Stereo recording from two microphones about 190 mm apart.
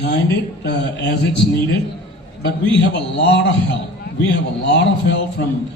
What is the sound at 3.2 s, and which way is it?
Speech, 65° left (ahead or behind).